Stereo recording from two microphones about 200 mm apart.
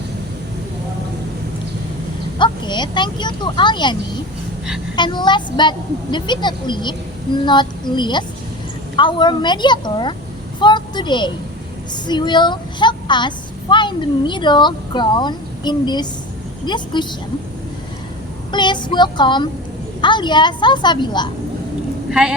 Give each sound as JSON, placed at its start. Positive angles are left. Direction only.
{"t": 2.4, "sound": "a woman's voice", "side_deg": 20}
{"t": 4.9, "sound": "a woman's voice", "side_deg": 20}
{"t": 18.5, "sound": "a woman's voice", "side_deg": 20}
{"t": 22.1, "sound": "a woman's voice", "side_deg": -5}